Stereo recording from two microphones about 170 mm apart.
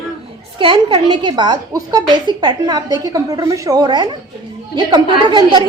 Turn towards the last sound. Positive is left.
turn(degrees=-25)  # may be behind; listen again after turning